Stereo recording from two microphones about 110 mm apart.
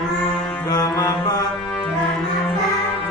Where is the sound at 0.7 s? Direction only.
35° left (ahead or behind).